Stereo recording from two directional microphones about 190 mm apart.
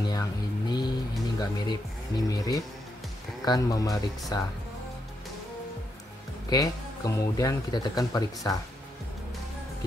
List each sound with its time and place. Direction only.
0.0 s a sound: 20° left (ahead or behind)
1.4 s speech: 20° left (ahead or behind)
6.5 s speech: 15° left (ahead or behind)